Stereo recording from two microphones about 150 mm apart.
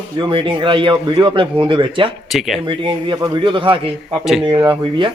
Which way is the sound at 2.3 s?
Centre (ahead or behind).